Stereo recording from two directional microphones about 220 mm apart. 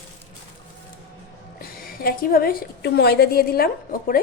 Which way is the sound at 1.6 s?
40° left (ahead or behind).